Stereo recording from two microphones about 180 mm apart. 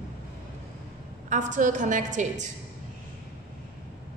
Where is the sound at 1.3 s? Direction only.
45° right (ahead or behind).